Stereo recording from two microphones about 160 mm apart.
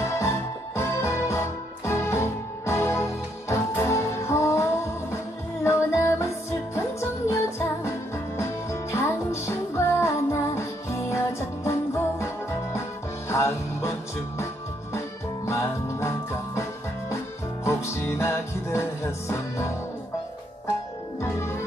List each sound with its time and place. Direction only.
0.0 s music: 15° left (ahead or behind)
13.3 s music: 15° left (ahead or behind)
15.4 s music: 15° left (ahead or behind)
17.6 s music: 15° left (ahead or behind)
21.2 s music: 15° left (ahead or behind)